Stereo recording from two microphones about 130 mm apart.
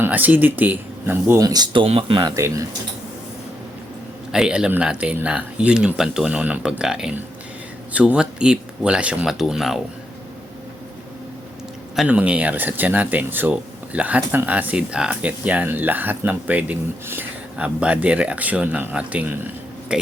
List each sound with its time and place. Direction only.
0.0 s speech: 15° right (ahead or behind); by 2.3 s 40° right (ahead or behind)
2.3 s speech: 25° right (ahead or behind)
4.3 s speech: 5° right (ahead or behind)
11.9 s speech: 10° right (ahead or behind)